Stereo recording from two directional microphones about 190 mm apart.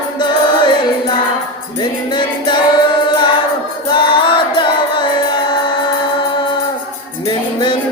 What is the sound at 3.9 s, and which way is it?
Music, 25° left (ahead or behind).